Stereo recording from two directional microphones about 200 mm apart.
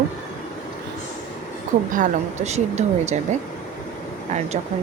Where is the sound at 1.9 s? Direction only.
35° right (ahead or behind).